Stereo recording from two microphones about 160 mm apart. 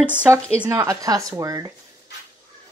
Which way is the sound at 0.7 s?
20° right (ahead or behind).